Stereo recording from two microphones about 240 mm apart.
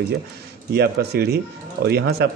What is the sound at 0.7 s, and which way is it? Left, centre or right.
Speech, right.